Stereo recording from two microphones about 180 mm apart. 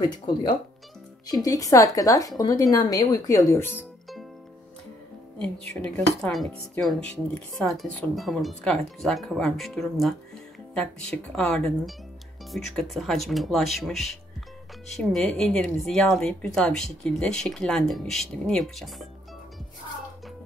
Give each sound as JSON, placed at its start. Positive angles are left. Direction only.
{"t": 0.0, "sound": "a woman's voice", "side_deg": 20}
{"t": 3.7, "sound": "music", "side_deg": 0}
{"t": 5.7, "sound": "speech", "side_deg": 5}